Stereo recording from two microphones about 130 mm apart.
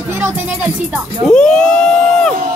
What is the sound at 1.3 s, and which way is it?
Speech, 5° left (ahead or behind).